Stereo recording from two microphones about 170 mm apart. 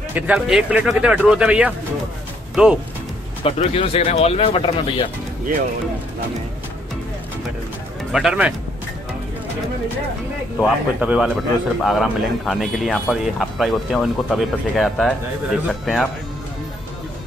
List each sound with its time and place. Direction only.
0.1 s speech: 5° right (ahead or behind)
3.4 s speech: 35° left (ahead or behind)
8.1 s speech: 5° right (ahead or behind)
10.6 s speech: 5° right (ahead or behind)